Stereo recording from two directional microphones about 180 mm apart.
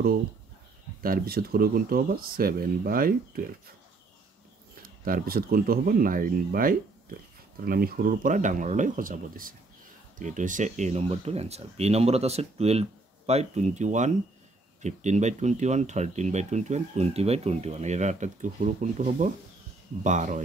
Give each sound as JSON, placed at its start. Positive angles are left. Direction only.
{"t": 1.0, "sound": "speech", "side_deg": -55}
{"t": 4.8, "sound": "speech", "side_deg": -55}